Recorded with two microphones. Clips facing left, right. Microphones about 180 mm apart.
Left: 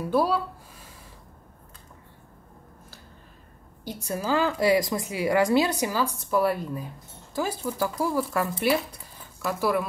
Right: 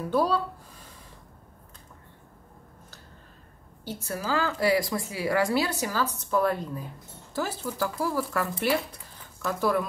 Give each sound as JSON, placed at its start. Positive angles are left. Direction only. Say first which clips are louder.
{"t": 0.1, "sound": "a woman's voice", "louder": "left 1 dB", "side_deg": 10}
{"t": 3.8, "sound": "a woman's voice", "louder": "left 3 dB", "side_deg": 15}